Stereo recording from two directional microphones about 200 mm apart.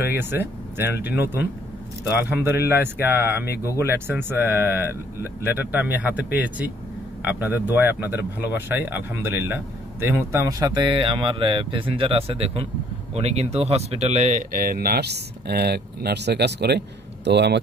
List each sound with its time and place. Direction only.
0.1 s a man's voice: 10° right (ahead or behind); by 17.6 s 60° right (ahead or behind)